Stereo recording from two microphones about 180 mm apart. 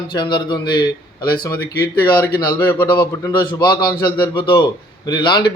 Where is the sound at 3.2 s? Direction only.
20° left (ahead or behind).